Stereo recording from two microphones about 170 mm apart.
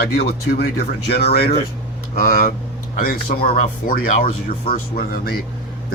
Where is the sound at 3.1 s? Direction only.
60° left (ahead or behind).